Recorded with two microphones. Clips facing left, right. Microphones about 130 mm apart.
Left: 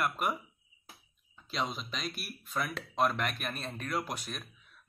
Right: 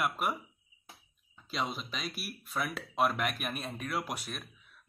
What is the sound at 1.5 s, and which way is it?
Speech, 5° right (ahead or behind).